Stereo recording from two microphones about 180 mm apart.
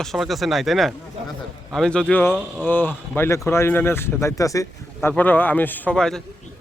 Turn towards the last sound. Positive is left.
turn(degrees=5)  # may be behind; listen again after turning